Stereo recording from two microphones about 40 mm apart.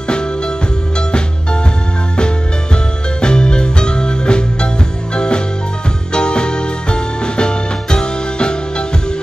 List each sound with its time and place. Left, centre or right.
0.9 s music: left